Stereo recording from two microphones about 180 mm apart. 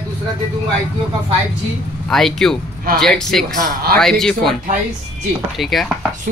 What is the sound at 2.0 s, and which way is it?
Speech, centre (ahead or behind).